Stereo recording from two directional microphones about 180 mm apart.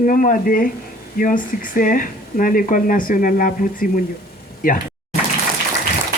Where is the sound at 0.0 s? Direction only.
45° left (ahead or behind).